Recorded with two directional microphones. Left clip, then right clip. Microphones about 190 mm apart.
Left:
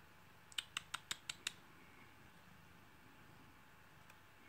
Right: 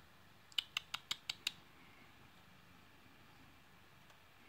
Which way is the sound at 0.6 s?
10° right (ahead or behind).